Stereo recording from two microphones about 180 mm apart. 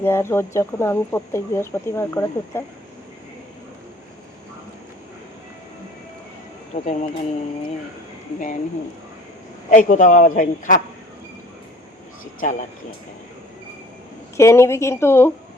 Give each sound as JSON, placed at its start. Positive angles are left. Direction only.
{"t": 0.0, "sound": "speech", "side_deg": 15}
{"t": 6.8, "sound": "speech", "side_deg": 35}
{"t": 9.6, "sound": "a man's voice", "side_deg": 45}
{"t": 12.4, "sound": "a man's voice", "side_deg": 45}
{"t": 14.3, "sound": "speech", "side_deg": 15}